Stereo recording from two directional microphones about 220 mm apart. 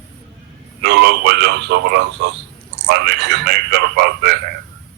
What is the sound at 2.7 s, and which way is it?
A man's voice, 50° right (ahead or behind).